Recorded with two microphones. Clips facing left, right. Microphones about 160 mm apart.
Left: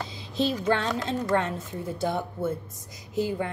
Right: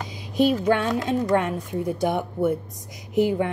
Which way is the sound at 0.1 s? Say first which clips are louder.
Right 8 dB; 15° right (ahead or behind).